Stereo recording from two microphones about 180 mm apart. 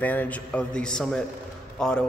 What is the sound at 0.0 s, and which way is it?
A man's voice, 10° left (ahead or behind).